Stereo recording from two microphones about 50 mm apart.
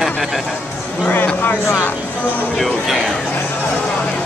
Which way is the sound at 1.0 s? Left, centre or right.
Left.